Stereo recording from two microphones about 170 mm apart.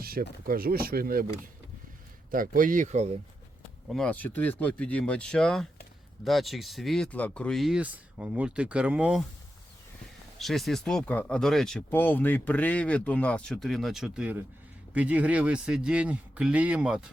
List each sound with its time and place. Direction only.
0.0 s speech: 60° right (ahead or behind)
2.3 s speech: 55° right (ahead or behind)
3.8 s speech: 5° left (ahead or behind)
10.3 s speech: centre (ahead or behind)